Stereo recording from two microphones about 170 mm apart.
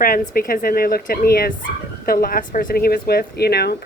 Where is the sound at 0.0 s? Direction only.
55° left (ahead or behind).